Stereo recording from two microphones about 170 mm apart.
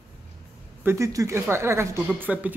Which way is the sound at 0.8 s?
15° right (ahead or behind).